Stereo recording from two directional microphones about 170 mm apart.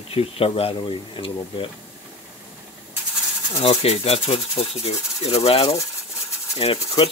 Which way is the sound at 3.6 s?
35° left (ahead or behind).